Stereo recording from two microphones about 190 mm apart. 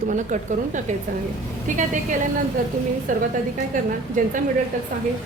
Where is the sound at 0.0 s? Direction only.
40° right (ahead or behind).